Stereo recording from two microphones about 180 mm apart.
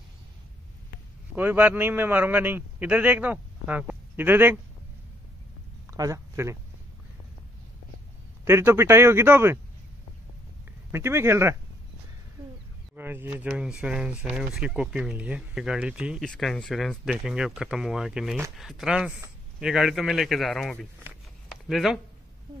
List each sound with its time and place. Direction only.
1.3 s a man's voice: 10° right (ahead or behind)
5.9 s a sound: 15° right (ahead or behind)
8.5 s speech: 15° right (ahead or behind)
10.9 s speech: 15° right (ahead or behind)
12.9 s speech: 10° right (ahead or behind)